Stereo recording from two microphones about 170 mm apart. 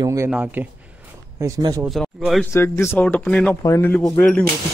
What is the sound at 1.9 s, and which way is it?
Speech, centre (ahead or behind).